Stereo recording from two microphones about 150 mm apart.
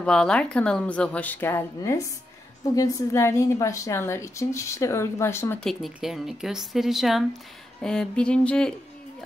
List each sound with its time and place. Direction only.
0.0 s a woman's voice: 5° left (ahead or behind)
5.6 s speech: centre (ahead or behind)